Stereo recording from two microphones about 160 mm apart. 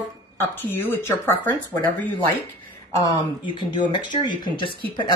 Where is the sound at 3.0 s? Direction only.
25° left (ahead or behind).